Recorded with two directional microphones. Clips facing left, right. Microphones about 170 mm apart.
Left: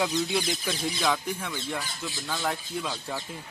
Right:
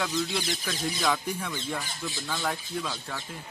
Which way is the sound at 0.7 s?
5° left (ahead or behind).